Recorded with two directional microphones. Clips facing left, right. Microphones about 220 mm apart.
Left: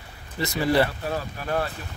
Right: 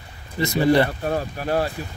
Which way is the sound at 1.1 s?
35° right (ahead or behind).